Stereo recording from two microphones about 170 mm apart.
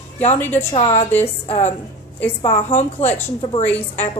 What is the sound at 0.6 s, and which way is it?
Speech, 35° left (ahead or behind).